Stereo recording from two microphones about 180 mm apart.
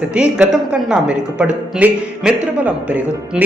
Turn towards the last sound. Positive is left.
turn(degrees=-5)  # may be behind; listen again after turning